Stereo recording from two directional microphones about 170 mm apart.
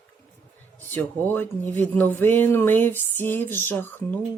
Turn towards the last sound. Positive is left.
turn(degrees=10)  # may be behind; listen again after turning